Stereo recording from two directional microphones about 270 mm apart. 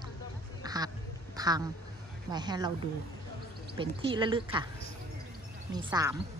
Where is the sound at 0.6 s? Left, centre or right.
Centre.